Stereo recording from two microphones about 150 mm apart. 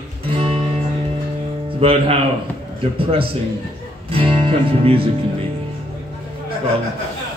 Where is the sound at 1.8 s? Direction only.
40° right (ahead or behind).